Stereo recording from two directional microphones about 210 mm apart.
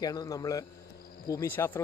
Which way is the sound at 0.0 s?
20° left (ahead or behind).